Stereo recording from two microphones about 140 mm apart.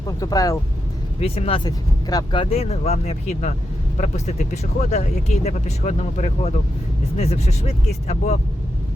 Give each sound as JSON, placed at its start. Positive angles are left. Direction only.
{"t": 0.2, "sound": "speech", "side_deg": 25}
{"t": 1.2, "sound": "speech", "side_deg": 45}
{"t": 4.5, "sound": "speech", "side_deg": 55}